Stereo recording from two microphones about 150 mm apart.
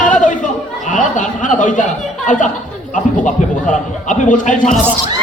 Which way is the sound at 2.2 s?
55° left (ahead or behind).